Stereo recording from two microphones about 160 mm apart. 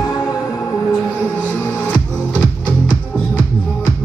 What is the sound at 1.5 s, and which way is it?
Music, 5° left (ahead or behind).